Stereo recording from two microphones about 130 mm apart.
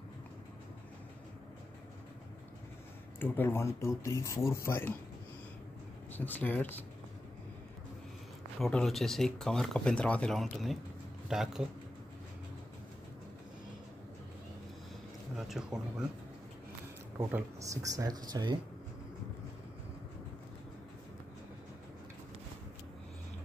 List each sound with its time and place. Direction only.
3.2 s speech: 15° left (ahead or behind)
6.1 s speech: 15° left (ahead or behind)
8.5 s speech: 5° left (ahead or behind)
15.3 s speech: centre (ahead or behind)
17.3 s speech: 25° right (ahead or behind)